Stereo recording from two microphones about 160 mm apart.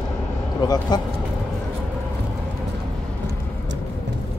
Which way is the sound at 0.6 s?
25° left (ahead or behind).